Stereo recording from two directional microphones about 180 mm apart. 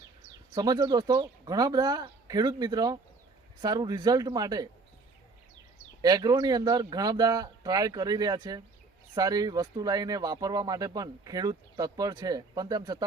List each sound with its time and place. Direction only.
0.5 s speech: 20° right (ahead or behind)
6.0 s speech: 20° right (ahead or behind)